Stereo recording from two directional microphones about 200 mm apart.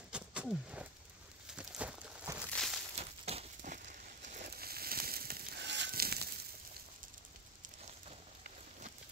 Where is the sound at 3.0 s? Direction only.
30° right (ahead or behind); by 6.4 s 50° right (ahead or behind).